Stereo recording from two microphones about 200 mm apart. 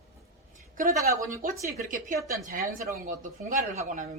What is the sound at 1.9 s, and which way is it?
A woman's voice, 40° right (ahead or behind).